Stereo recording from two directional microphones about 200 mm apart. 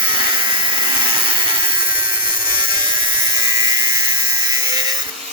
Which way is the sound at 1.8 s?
25° right (ahead or behind).